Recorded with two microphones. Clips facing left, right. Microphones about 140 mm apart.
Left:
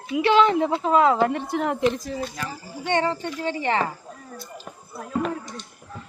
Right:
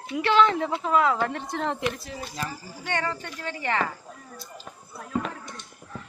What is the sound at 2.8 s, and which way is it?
Speech, 25° left (ahead or behind).